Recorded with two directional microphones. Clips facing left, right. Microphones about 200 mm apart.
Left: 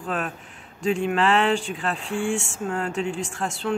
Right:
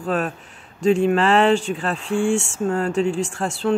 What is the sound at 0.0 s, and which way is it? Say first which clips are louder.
Speech: right 6 dB; 40° right (ahead or behind).